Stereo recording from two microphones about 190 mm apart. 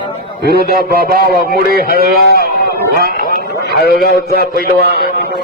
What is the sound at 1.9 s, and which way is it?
A man's voice, 55° right (ahead or behind).